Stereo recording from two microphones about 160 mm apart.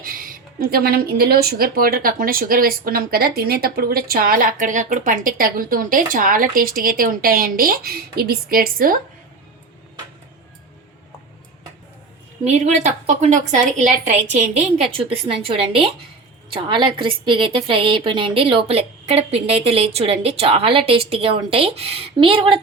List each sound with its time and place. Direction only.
0.0 s speech: 65° right (ahead or behind)
12.5 s a woman's voice: 45° right (ahead or behind)